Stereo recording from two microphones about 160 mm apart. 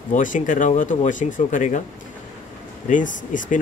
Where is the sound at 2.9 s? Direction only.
55° left (ahead or behind).